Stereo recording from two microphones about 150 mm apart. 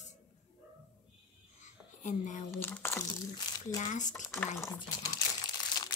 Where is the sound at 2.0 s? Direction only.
55° left (ahead or behind).